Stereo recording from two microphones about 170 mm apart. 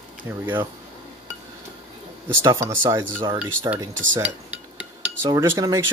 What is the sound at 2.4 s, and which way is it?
Speech, 15° right (ahead or behind).